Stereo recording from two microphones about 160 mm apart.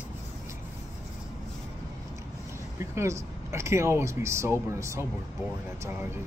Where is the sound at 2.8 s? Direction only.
20° right (ahead or behind).